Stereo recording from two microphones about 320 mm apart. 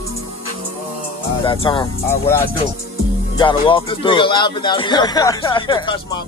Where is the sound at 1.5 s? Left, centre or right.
Centre.